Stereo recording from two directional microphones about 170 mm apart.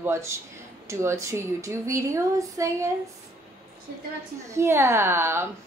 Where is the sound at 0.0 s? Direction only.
15° right (ahead or behind).